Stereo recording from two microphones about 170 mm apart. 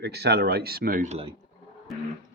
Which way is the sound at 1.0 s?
35° right (ahead or behind).